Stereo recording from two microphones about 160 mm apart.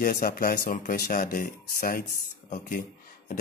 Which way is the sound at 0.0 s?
60° left (ahead or behind).